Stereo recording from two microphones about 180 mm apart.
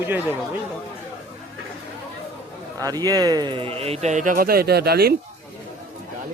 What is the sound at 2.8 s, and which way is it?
A man's voice, 20° right (ahead or behind).